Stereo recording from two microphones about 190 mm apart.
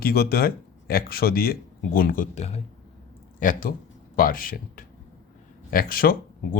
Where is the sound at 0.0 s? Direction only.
55° left (ahead or behind); by 2.6 s 35° left (ahead or behind).